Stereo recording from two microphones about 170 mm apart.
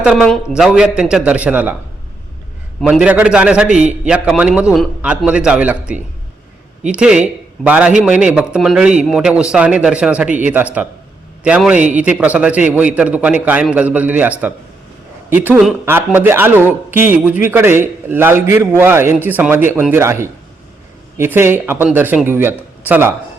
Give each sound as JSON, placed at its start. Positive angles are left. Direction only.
{"t": 0.0, "sound": "a man's voice", "side_deg": -5}
{"t": 2.8, "sound": "a man's voice", "side_deg": -5}